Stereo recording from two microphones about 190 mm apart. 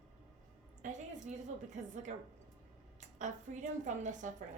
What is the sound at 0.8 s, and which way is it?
Speech, 40° right (ahead or behind).